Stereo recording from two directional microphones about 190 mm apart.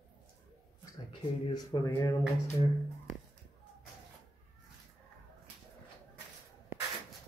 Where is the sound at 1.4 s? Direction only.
20° left (ahead or behind).